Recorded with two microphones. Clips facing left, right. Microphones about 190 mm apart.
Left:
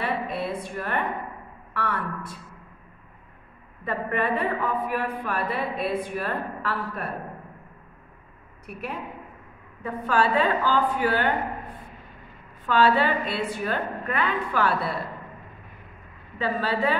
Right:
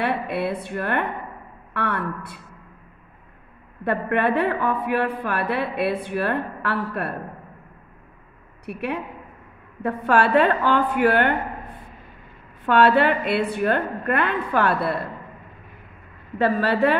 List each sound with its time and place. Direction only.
0.0 s a woman's voice: 65° right (ahead or behind)
3.8 s a woman's voice: 70° right (ahead or behind)
8.6 s a woman's voice: 70° right (ahead or behind)
12.6 s a woman's voice: 65° right (ahead or behind)
16.3 s a woman's voice: 65° right (ahead or behind)